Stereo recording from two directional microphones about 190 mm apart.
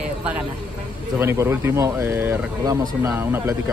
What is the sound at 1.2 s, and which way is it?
Speech, 15° right (ahead or behind).